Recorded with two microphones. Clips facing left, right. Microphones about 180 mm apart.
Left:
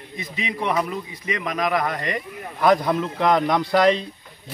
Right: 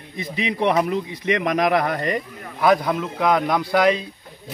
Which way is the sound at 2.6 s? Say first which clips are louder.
Even; 5° right (ahead or behind).